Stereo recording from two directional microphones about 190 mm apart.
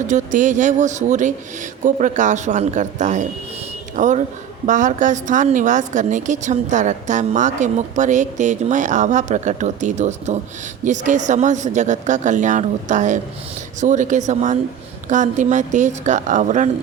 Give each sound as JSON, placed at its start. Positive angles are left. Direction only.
{"t": 0.1, "sound": "a woman's voice", "side_deg": -40}